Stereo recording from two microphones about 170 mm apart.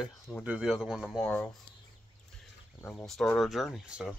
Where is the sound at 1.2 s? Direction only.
10° left (ahead or behind).